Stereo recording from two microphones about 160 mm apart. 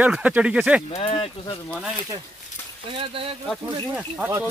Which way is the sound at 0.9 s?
35° left (ahead or behind).